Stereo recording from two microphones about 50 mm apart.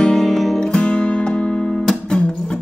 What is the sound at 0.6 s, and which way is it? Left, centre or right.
Music, left.